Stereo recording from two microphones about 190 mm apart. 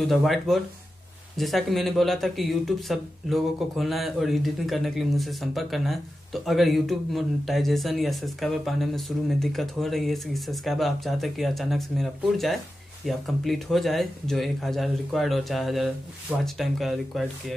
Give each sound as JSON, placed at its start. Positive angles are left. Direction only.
{"t": 0.0, "sound": "speech", "side_deg": 0}